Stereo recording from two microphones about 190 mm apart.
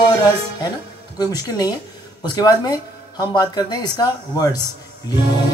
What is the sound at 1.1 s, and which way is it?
Speech, 20° left (ahead or behind).